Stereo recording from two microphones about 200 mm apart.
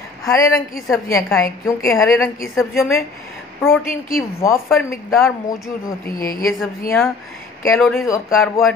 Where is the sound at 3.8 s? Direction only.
45° left (ahead or behind).